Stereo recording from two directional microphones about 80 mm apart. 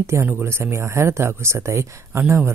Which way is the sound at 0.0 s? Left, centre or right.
Right.